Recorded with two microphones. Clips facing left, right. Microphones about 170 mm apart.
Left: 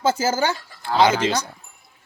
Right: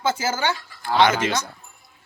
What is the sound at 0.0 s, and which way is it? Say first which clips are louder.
Speech: left 3 dB; 40° left (ahead or behind).